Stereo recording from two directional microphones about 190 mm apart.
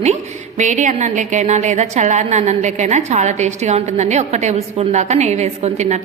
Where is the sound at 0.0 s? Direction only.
35° right (ahead or behind).